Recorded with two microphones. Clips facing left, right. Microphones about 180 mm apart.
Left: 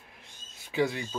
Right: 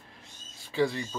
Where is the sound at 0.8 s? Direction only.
10° left (ahead or behind).